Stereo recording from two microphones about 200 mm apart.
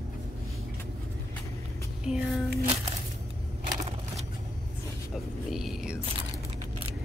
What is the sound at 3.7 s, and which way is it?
Crushing, 30° right (ahead or behind).